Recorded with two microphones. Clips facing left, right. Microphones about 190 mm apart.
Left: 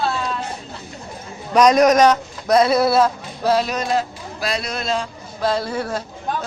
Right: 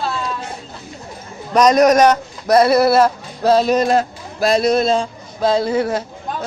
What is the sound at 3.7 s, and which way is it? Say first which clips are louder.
Speech: right 6 dB; 50° right (ahead or behind).